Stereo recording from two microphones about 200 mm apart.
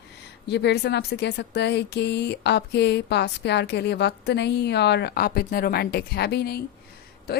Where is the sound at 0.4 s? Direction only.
60° left (ahead or behind).